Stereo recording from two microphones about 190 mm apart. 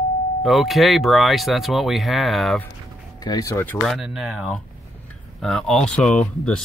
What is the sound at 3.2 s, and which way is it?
Speech, 20° left (ahead or behind).